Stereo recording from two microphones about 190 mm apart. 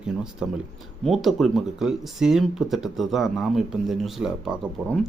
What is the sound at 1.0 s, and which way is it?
Speech, centre (ahead or behind).